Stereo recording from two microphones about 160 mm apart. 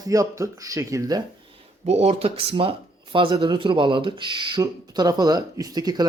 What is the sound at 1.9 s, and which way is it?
Speech, 40° right (ahead or behind).